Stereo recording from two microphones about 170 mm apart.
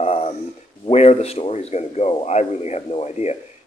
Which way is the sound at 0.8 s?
35° left (ahead or behind).